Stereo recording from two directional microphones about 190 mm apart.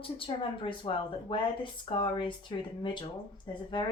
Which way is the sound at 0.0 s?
30° left (ahead or behind).